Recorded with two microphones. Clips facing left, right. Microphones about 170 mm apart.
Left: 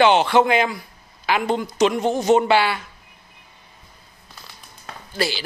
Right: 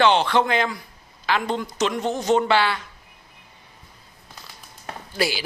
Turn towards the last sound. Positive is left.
turn(degrees=-5)  # may be behind; listen again after turning